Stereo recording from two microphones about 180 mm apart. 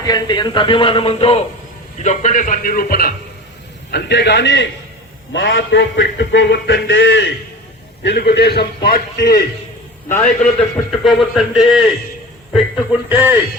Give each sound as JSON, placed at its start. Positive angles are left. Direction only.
{"t": 0.0, "sound": "a man's voice", "side_deg": 20}
{"t": 3.9, "sound": "a man's voice", "side_deg": 70}
{"t": 5.3, "sound": "a man's voice", "side_deg": 85}
{"t": 8.0, "sound": "a man's voice", "side_deg": 65}
{"t": 10.1, "sound": "a man's voice", "side_deg": 15}
{"t": 10.9, "sound": "a man's voice", "side_deg": 0}